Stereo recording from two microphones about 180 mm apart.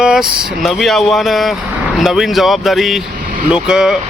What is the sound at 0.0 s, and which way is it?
A man's voice, 5° right (ahead or behind).